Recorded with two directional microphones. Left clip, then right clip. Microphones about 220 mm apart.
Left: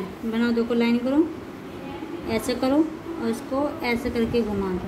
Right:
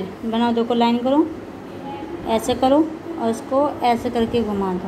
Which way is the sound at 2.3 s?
5° right (ahead or behind).